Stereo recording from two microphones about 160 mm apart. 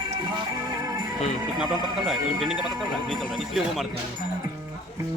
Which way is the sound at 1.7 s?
25° right (ahead or behind).